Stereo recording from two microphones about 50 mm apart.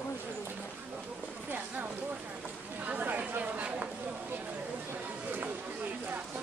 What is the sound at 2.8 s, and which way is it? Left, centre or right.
Chatter, right.